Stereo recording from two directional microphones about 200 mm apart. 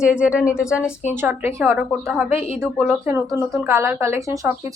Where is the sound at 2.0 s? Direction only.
Centre (ahead or behind).